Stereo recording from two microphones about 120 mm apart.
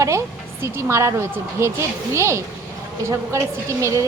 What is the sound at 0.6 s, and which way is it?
A woman's voice, 25° right (ahead or behind).